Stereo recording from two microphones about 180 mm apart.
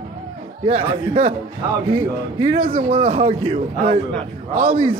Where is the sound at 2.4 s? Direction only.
30° right (ahead or behind).